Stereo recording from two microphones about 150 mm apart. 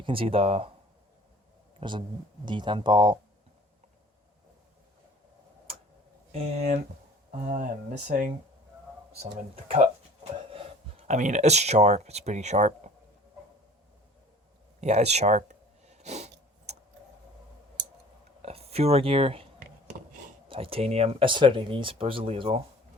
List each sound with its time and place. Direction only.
0.0 s speech: 35° right (ahead or behind)
1.8 s speech: 30° right (ahead or behind)
6.3 s speech: 45° right (ahead or behind)
10.5 s a sound: 40° right (ahead or behind)
11.2 s speech: 50° right (ahead or behind)
14.8 s snort: 45° right (ahead or behind)
18.4 s speech: 45° right (ahead or behind)
20.5 s speech: 35° right (ahead or behind)